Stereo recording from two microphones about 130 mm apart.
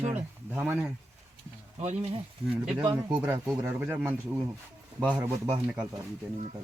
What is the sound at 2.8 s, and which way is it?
Speech, 35° right (ahead or behind).